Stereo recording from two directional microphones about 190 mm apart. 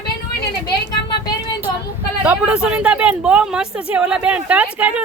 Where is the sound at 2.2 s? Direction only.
5° right (ahead or behind).